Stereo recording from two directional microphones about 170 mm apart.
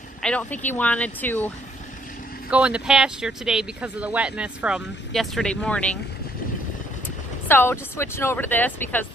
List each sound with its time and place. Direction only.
0.2 s speech: 5° left (ahead or behind)
2.5 s speech: 5° right (ahead or behind)
7.4 s speech: 15° left (ahead or behind)